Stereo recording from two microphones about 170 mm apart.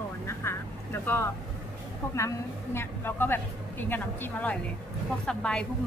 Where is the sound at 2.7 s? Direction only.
10° left (ahead or behind).